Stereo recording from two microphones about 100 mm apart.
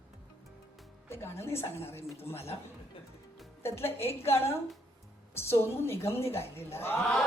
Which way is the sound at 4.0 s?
90° left.